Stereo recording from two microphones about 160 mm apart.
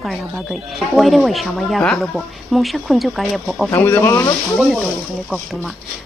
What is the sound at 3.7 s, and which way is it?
Speech, 15° left (ahead or behind).